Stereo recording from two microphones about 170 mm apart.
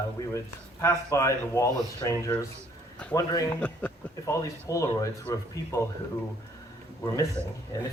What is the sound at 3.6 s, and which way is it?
Speech, 10° left (ahead or behind).